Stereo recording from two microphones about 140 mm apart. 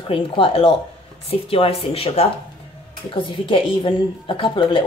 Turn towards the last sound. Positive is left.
turn(degrees=35)  # may be behind; listen again after turning